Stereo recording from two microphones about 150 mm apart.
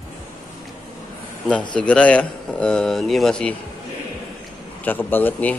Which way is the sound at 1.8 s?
10° left (ahead or behind).